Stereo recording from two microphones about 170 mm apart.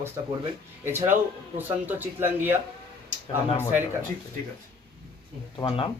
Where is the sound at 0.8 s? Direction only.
15° right (ahead or behind).